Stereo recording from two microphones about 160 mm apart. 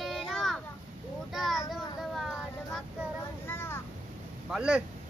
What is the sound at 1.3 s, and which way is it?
Child singing, centre (ahead or behind).